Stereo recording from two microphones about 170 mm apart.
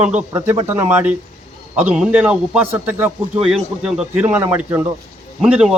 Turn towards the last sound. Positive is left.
turn(degrees=-5)  # may be behind; listen again after turning